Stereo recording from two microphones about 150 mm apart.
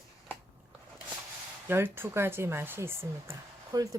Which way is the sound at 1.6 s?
15° right (ahead or behind).